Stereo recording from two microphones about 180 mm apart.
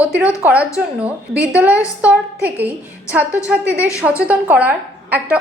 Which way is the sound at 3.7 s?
15° left (ahead or behind).